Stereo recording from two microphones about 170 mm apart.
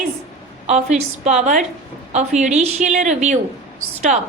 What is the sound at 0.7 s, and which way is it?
A woman's voice, 40° right (ahead or behind).